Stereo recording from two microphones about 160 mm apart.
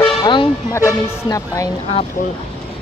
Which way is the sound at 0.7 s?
20° left (ahead or behind).